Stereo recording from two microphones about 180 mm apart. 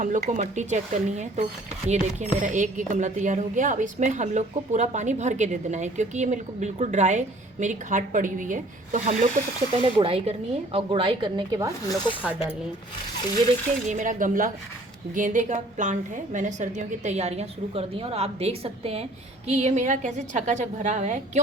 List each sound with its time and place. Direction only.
0.0 s a woman's voice: 45° right (ahead or behind)
9.8 s speech: 30° right (ahead or behind)
12.2 s speech: 10° right (ahead or behind)
13.8 s a woman's voice: 45° right (ahead or behind)